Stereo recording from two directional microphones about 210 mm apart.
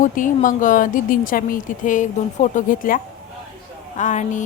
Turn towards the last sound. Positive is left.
turn(degrees=35)  # may be behind; listen again after turning